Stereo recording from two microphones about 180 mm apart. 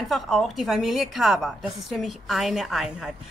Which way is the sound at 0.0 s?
Centre (ahead or behind).